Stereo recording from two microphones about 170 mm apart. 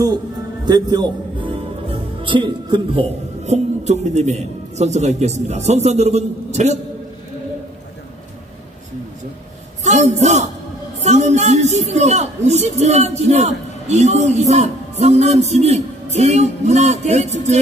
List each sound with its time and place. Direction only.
0.7 s a man's voice: 25° right (ahead or behind); by 6.8 s 40° right (ahead or behind)
9.8 s a man's voice: 40° right (ahead or behind)